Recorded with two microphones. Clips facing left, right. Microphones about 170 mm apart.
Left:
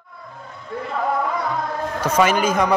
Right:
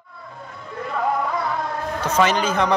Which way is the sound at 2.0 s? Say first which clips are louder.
Left 2 dB; 10° left (ahead or behind).